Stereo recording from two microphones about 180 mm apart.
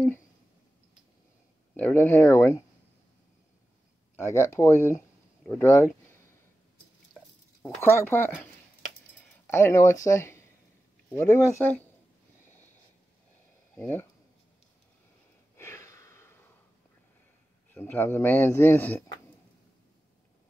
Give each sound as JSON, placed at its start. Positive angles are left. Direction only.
{"t": 1.8, "sound": "speech", "side_deg": 10}
{"t": 4.2, "sound": "speech", "side_deg": 15}
{"t": 8.1, "sound": "speech", "side_deg": 15}
{"t": 9.5, "sound": "speech", "side_deg": 15}
{"t": 13.7, "sound": "speech", "side_deg": 10}
{"t": 15.5, "sound": "a sound", "side_deg": 15}
{"t": 17.7, "sound": "speech", "side_deg": 10}